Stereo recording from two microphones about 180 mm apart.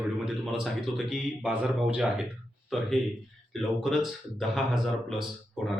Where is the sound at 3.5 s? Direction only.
Centre (ahead or behind).